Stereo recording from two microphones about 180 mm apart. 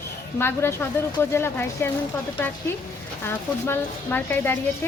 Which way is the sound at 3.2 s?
10° left (ahead or behind).